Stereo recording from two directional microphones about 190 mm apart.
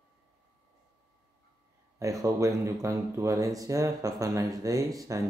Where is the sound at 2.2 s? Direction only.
15° right (ahead or behind).